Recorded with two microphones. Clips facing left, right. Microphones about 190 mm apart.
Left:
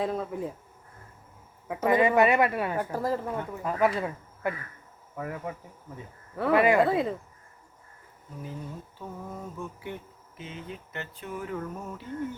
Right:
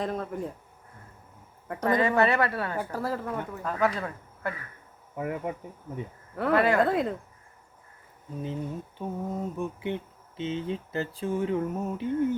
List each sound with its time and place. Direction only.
0.0 s speech: 5° left (ahead or behind)
1.6 s a woman's voice: 5° left (ahead or behind)
5.1 s speech: 20° right (ahead or behind)
6.3 s speech: 5° left (ahead or behind)
9.0 s speech: 20° right (ahead or behind)